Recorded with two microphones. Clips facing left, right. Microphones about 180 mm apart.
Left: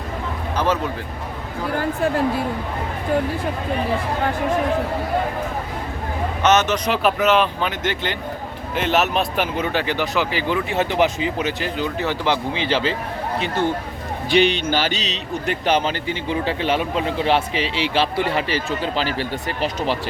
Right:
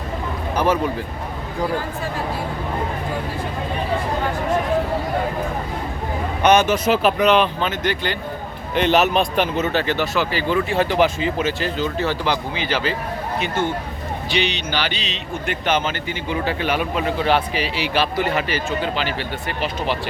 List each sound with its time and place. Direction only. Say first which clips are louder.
0.5 s a sound: right 2 dB; 10° right (ahead or behind)
6.4 s speech: right 2 dB; 10° right (ahead or behind); by 7.7 s 5° left (ahead or behind)
8.7 s speech: right 3 dB; centre (ahead or behind); by 13.0 s 25° left (ahead or behind)
14.3 s a man's voice: left 7 dB; 50° left (ahead or behind)